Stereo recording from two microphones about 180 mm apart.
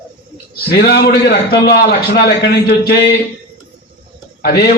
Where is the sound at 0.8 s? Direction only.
60° left (ahead or behind).